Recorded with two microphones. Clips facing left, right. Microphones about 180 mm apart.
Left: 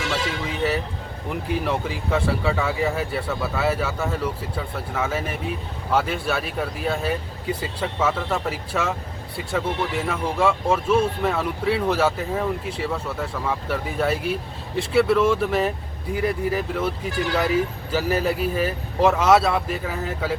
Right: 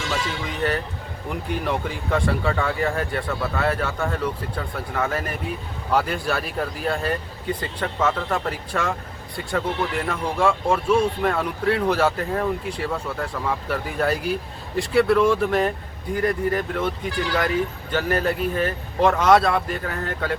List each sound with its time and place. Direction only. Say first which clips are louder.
0.1 s speech: left 1 dB; 5° left (ahead or behind)
17.9 s speech: even; 5° left (ahead or behind)